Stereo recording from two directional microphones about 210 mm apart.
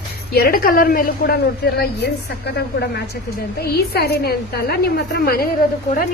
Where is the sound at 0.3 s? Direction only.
45° left (ahead or behind).